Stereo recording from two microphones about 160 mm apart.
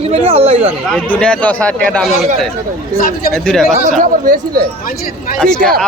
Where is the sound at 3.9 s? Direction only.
55° right (ahead or behind).